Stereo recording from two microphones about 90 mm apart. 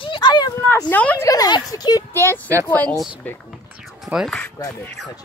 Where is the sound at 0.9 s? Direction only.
15° left (ahead or behind).